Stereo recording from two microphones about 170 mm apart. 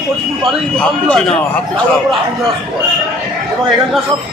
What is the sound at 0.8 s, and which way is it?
Speech, 5° left (ahead or behind).